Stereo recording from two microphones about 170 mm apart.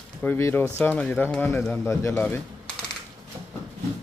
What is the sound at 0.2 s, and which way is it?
Speech, 15° left (ahead or behind).